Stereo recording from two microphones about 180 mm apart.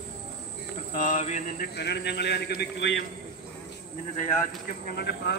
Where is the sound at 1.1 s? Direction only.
40° left (ahead or behind); by 3.0 s 75° left (ahead or behind).